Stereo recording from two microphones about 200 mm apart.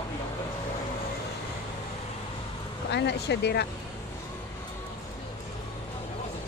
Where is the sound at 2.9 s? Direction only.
60° left (ahead or behind).